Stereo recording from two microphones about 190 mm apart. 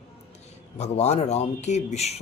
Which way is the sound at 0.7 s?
35° left (ahead or behind).